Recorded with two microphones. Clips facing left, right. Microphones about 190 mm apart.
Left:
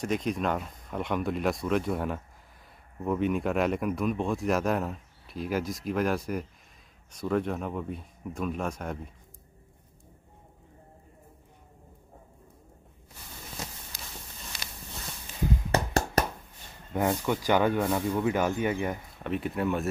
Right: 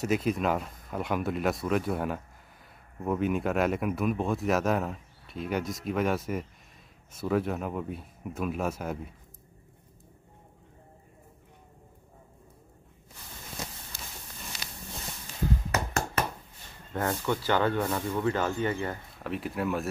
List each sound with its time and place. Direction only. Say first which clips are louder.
0.0 s speech: right 2 dB; 5° right (ahead or behind)
15.7 s hands: left 4 dB; 35° left (ahead or behind)
16.9 s speech: left 2 dB; 15° left (ahead or behind)
19.2 s speech: left 2 dB; centre (ahead or behind)